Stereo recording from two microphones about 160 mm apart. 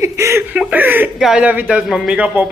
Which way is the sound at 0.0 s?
15° right (ahead or behind).